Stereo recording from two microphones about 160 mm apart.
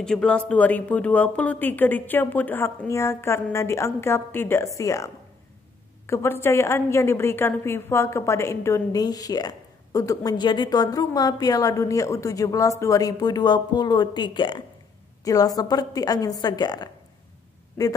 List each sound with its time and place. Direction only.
0.0 s a woman's voice: 5° left (ahead or behind); by 16.9 s 25° left (ahead or behind)